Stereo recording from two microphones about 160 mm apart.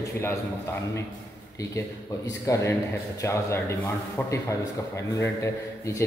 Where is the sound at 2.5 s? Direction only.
15° left (ahead or behind).